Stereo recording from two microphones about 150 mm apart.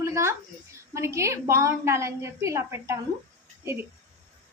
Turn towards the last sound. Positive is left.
turn(degrees=-15)  # may be behind; listen again after turning